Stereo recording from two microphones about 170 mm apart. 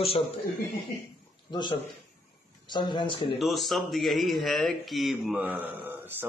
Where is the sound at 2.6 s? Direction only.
25° left (ahead or behind).